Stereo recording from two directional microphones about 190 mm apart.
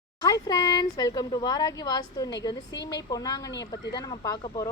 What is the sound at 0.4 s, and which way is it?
A woman's voice, 20° left (ahead or behind).